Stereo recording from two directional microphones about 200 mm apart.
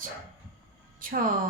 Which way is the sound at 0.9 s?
45° right (ahead or behind).